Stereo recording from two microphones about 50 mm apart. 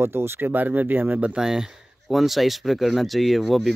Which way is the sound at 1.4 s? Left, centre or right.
Centre.